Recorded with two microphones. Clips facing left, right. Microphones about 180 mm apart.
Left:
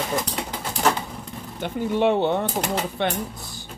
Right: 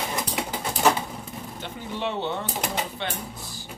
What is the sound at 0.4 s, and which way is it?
Bird, 5° right (ahead or behind).